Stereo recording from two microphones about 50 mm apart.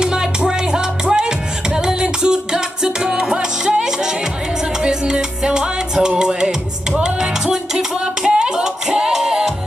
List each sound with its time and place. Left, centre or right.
0.0 s music: centre